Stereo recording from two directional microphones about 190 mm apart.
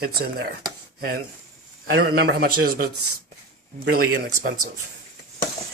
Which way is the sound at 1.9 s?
55° right (ahead or behind).